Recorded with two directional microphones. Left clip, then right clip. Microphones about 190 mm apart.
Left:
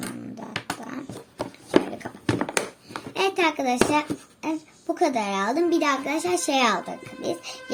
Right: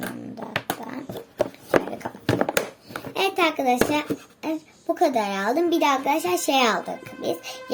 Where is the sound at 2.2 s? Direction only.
30° right (ahead or behind).